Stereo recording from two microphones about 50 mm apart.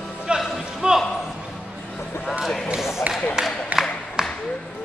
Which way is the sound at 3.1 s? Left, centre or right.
Right.